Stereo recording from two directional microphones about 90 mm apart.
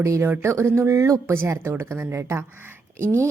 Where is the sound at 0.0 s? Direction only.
30° right (ahead or behind).